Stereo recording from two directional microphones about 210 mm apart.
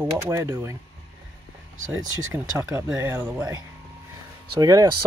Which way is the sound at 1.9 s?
15° right (ahead or behind).